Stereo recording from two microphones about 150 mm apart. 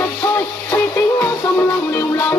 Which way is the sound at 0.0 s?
15° left (ahead or behind).